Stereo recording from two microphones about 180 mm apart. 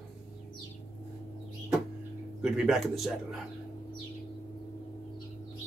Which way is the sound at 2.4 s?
Centre (ahead or behind).